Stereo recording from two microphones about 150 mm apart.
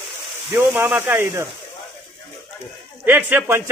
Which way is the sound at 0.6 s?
15° right (ahead or behind).